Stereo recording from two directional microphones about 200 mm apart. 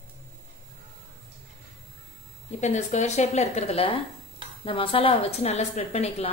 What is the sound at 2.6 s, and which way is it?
A woman's voice, 35° left (ahead or behind).